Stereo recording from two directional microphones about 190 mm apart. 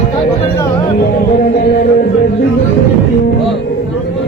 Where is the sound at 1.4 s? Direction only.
50° left (ahead or behind).